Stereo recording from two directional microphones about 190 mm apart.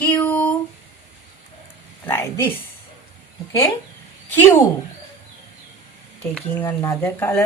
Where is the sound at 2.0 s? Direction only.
10° left (ahead or behind).